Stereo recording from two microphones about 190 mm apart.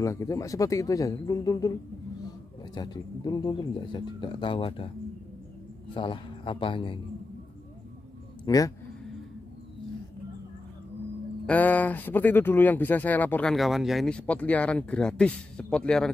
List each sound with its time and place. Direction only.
0.0 s speech: 15° left (ahead or behind)
2.7 s a man's voice: 20° left (ahead or behind)
5.9 s a man's voice: 25° left (ahead or behind)
8.5 s a man's voice: 20° left (ahead or behind)
11.4 s speech: 10° left (ahead or behind)